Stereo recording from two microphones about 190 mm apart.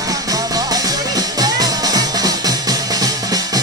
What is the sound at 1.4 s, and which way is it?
Music, 20° right (ahead or behind).